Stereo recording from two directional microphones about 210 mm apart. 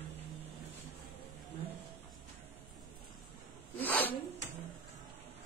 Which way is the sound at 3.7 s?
10° left (ahead or behind).